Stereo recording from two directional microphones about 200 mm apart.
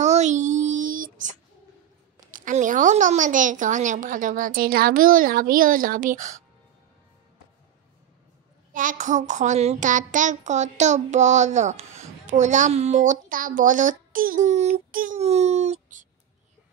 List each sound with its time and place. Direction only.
0.0 s a sound: 35° right (ahead or behind)
2.3 s a woman's voice: 40° right (ahead or behind)
8.7 s a woman's voice: 40° right (ahead or behind)